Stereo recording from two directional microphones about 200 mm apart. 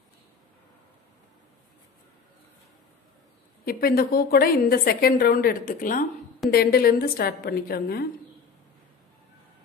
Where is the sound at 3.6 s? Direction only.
50° left (ahead or behind).